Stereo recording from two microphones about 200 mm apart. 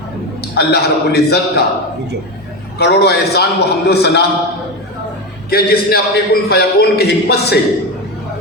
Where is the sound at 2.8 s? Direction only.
55° left (ahead or behind).